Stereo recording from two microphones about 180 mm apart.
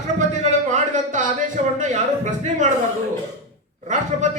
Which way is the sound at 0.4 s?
40° right (ahead or behind).